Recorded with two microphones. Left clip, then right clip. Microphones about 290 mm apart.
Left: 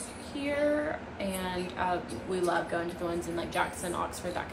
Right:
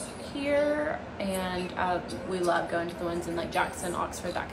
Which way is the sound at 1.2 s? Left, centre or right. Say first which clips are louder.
Right 3 dB; centre.